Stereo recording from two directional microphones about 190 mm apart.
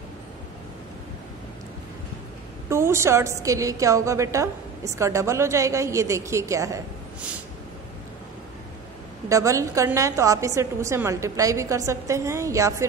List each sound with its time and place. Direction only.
2.7 s a woman's voice: 15° right (ahead or behind)
9.3 s a woman's voice: 15° right (ahead or behind)